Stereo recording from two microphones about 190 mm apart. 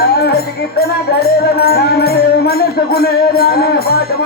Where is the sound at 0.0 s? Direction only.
55° left (ahead or behind).